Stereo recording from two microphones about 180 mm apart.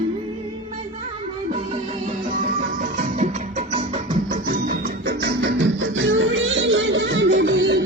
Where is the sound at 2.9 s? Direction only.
45° right (ahead or behind).